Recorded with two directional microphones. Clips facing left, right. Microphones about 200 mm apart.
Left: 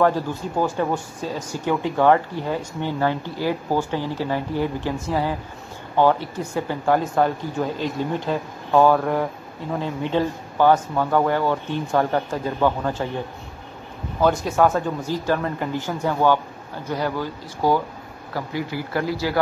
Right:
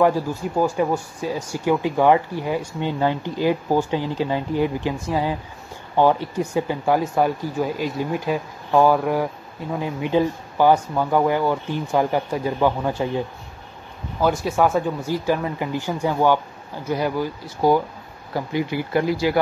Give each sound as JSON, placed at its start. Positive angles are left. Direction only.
{"t": 0.6, "sound": "speech", "side_deg": -10}
{"t": 14.2, "sound": "speech", "side_deg": -10}